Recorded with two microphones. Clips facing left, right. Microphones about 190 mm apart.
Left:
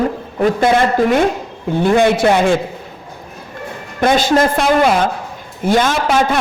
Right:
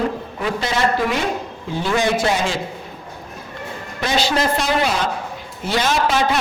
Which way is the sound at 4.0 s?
50° left (ahead or behind).